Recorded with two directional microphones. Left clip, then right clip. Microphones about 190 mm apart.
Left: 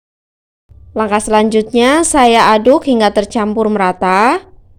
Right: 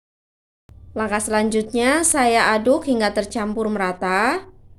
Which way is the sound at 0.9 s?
40° left (ahead or behind).